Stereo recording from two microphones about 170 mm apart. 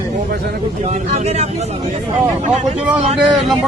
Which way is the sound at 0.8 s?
40° right (ahead or behind).